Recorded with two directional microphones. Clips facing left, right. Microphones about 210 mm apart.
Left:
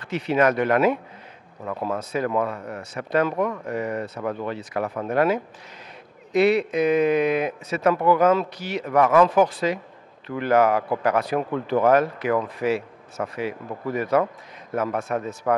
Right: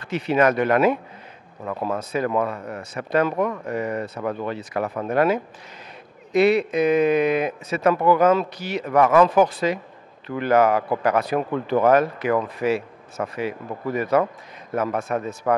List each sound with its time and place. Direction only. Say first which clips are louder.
0.1 s speech: right 1 dB; 10° right (ahead or behind)
1.6 s speech: right 1 dB; 25° right (ahead or behind)
14.8 s speech: right 1 dB; 20° right (ahead or behind)